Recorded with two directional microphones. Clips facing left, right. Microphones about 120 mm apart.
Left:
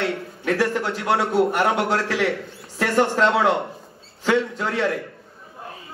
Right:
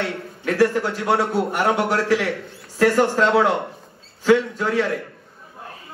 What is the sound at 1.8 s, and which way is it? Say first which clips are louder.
A man's voice: right 2 dB; 25° left (ahead or behind).